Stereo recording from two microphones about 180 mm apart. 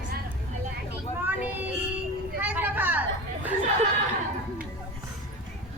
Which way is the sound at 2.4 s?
10° right (ahead or behind).